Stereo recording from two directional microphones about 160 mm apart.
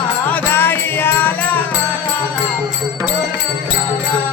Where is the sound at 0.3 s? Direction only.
15° left (ahead or behind).